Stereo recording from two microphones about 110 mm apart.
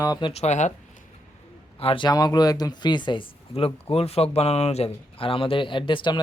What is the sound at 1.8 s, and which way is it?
Speech, 55° left (ahead or behind).